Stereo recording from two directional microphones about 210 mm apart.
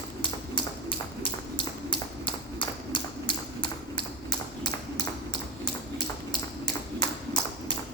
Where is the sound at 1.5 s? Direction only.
25° left (ahead or behind).